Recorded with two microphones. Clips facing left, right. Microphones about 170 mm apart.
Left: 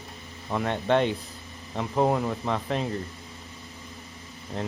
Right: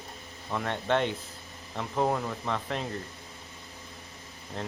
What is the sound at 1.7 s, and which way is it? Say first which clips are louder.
Speech: left 4 dB; 25° left (ahead or behind).